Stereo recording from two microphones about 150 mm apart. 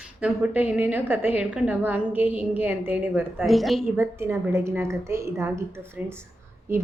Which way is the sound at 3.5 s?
Centre (ahead or behind).